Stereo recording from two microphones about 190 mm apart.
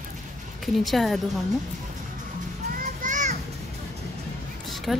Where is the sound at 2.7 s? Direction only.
40° right (ahead or behind).